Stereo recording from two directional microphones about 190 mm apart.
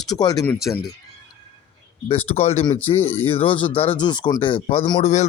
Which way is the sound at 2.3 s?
30° left (ahead or behind).